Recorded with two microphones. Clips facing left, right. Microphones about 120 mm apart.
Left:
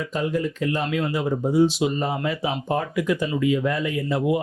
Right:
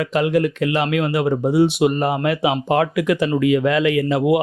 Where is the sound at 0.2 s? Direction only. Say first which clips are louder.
Right 6 dB; 75° right (ahead or behind).